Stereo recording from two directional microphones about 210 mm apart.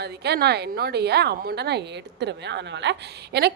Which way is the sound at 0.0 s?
50° right (ahead or behind).